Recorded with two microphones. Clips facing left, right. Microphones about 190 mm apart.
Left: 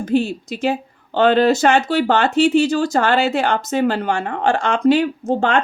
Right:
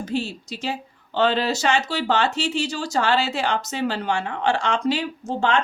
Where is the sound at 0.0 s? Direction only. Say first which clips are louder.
Left 8 dB; 55° left (ahead or behind).